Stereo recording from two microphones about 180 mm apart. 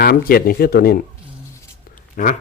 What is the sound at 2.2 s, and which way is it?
Speech, 50° left (ahead or behind).